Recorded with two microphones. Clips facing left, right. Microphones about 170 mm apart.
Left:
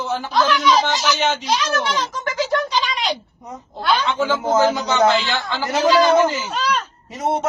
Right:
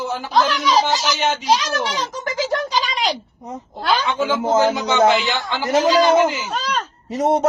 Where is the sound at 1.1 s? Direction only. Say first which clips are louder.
Left 1 dB; 10° right (ahead or behind).